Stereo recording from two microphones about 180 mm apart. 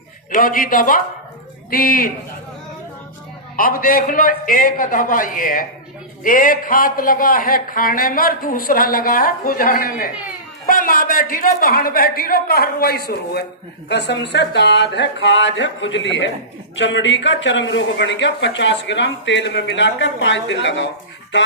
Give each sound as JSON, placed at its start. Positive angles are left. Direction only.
{"t": 0.3, "sound": "speech", "side_deg": 50}
{"t": 3.5, "sound": "a woman's voice", "side_deg": 50}